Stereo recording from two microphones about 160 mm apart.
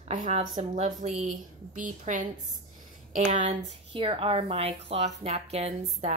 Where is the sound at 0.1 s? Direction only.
50° right (ahead or behind).